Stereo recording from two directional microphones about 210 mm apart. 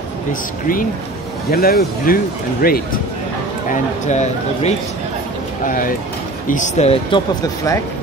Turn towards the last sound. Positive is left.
turn(degrees=30)  # may be behind; listen again after turning